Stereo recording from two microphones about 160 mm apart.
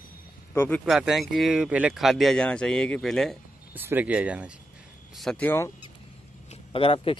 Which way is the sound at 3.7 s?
10° right (ahead or behind).